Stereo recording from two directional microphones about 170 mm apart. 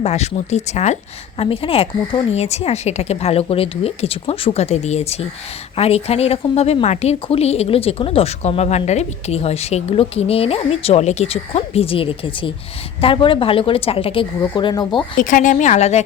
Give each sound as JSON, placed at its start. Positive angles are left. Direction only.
{"t": 0.0, "sound": "a woman's voice", "side_deg": 40}
{"t": 15.2, "sound": "a woman's voice", "side_deg": 50}